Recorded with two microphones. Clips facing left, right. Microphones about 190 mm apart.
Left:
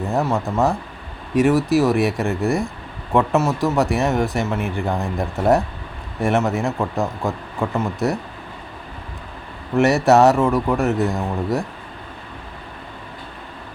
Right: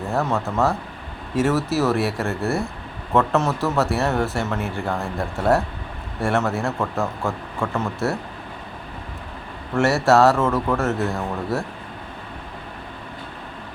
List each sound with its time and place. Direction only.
0.1 s speech: 15° left (ahead or behind)
9.7 s speech: 15° left (ahead or behind)